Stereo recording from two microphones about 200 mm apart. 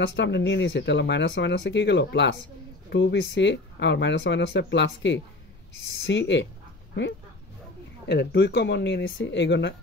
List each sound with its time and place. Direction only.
0.1 s speech: 60° left (ahead or behind)
8.1 s speech: 55° left (ahead or behind)